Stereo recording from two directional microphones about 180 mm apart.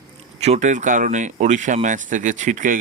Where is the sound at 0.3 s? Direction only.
35° right (ahead or behind).